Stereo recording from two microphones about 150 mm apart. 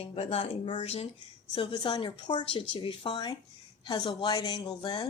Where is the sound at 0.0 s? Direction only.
40° left (ahead or behind).